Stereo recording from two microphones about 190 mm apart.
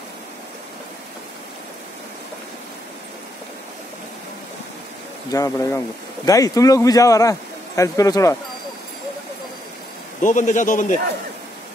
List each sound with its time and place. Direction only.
5.3 s speech: 15° left (ahead or behind)
10.2 s a man's voice: 40° left (ahead or behind)